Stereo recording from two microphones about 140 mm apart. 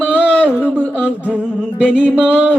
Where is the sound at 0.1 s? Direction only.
10° right (ahead or behind).